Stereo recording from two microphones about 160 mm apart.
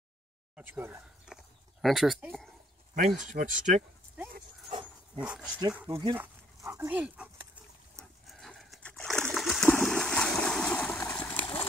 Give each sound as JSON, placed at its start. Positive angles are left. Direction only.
{"t": 0.6, "sound": "a sound", "side_deg": -10}
{"t": 3.3, "sound": "speech", "side_deg": -55}
{"t": 4.6, "sound": "dog", "side_deg": -35}
{"t": 5.2, "sound": "speech", "side_deg": -5}
{"t": 5.8, "sound": "speech", "side_deg": -20}
{"t": 7.9, "sound": "a sound", "side_deg": 0}